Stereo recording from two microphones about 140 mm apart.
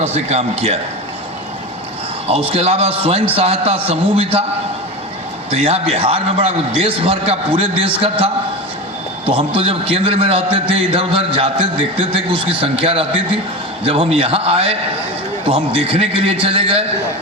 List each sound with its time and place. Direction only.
0.0 s a man's voice: 50° right (ahead or behind)
2.5 s a man's voice: 45° right (ahead or behind)
5.5 s a man's voice: 45° right (ahead or behind)
9.6 s a man's voice: 40° right (ahead or behind)